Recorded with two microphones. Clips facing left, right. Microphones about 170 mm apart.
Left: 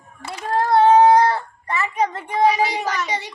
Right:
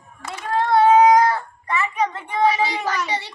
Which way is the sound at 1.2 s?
35° left (ahead or behind).